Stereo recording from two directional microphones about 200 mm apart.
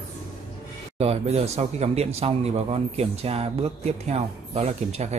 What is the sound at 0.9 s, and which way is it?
Speech, 30° right (ahead or behind).